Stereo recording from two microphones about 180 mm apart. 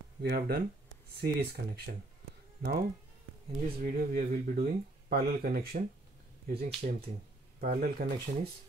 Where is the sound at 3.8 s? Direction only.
50° right (ahead or behind).